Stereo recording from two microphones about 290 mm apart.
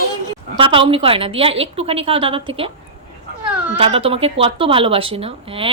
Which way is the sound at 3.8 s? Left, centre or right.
Centre.